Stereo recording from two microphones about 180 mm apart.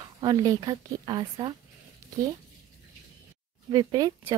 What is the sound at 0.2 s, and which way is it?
Speech, 20° right (ahead or behind).